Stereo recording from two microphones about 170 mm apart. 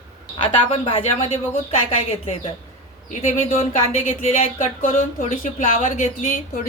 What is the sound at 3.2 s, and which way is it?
Speech, 45° left (ahead or behind).